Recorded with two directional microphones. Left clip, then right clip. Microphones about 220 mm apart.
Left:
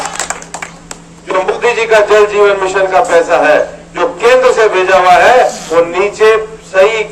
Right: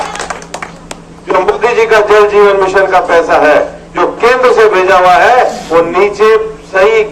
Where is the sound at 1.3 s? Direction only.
30° right (ahead or behind).